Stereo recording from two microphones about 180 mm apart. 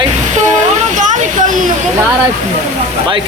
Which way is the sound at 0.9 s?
45° right (ahead or behind).